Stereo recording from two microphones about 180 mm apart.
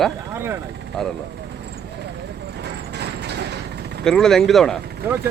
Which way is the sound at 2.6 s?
70° right (ahead or behind).